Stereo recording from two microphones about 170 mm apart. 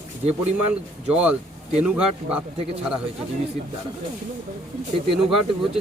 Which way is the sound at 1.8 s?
5° right (ahead or behind).